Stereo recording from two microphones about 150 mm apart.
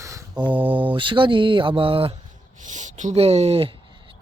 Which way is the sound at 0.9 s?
35° right (ahead or behind).